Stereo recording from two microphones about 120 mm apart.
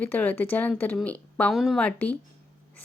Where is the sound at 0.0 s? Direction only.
15° left (ahead or behind).